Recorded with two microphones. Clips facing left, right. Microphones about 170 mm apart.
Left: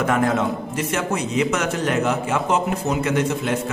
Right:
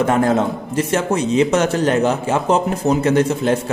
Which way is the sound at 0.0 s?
30° right (ahead or behind).